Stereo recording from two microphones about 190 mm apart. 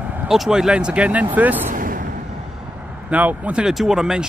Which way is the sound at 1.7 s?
45° right (ahead or behind).